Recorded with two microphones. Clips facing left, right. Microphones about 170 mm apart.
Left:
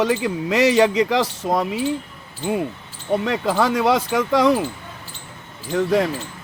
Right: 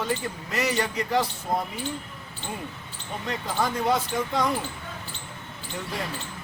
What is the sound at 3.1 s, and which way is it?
Speech, 85° left.